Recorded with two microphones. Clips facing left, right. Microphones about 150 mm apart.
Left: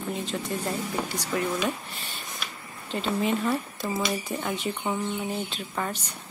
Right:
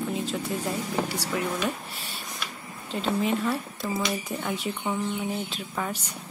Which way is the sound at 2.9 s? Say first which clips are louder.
Even; centre (ahead or behind).